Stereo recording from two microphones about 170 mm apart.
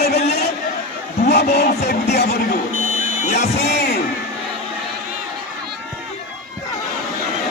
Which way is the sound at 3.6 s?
80° left.